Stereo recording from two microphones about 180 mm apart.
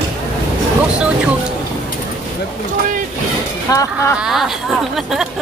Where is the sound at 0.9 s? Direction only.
5° right (ahead or behind).